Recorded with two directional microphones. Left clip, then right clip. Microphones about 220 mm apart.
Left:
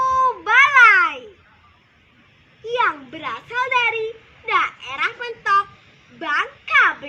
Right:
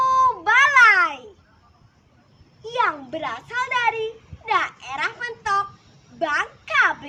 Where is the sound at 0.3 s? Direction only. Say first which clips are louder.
Left 2 dB; 20° right (ahead or behind).